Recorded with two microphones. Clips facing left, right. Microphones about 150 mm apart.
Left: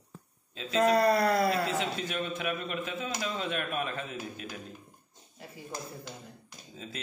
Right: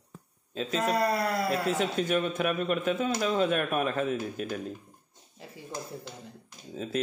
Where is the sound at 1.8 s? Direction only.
45° right (ahead or behind).